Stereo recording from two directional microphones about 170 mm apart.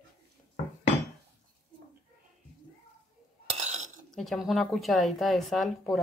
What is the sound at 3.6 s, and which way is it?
Dishes, 40° right (ahead or behind).